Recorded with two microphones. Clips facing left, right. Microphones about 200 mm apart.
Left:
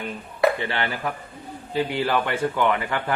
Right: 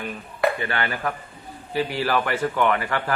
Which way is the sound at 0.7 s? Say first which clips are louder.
Right 1 dB; 20° left (ahead or behind).